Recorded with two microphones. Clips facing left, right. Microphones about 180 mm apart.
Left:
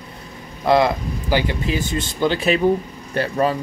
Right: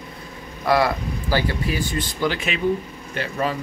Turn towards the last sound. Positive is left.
turn(degrees=40)  # may be behind; listen again after turning